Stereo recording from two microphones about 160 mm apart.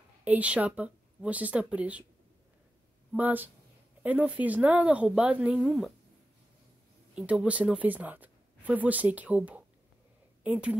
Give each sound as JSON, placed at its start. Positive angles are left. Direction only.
{"t": 0.2, "sound": "speech", "side_deg": -10}
{"t": 3.1, "sound": "speech", "side_deg": -10}
{"t": 7.2, "sound": "speech", "side_deg": -5}